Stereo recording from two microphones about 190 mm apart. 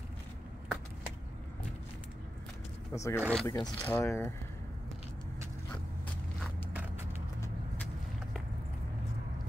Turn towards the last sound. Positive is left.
turn(degrees=10)  # may be behind; listen again after turning